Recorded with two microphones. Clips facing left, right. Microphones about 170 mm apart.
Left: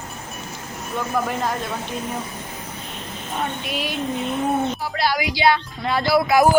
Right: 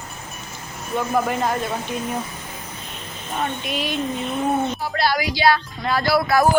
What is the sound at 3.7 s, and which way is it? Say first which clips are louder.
Speech: right 1 dB; 10° left (ahead or behind).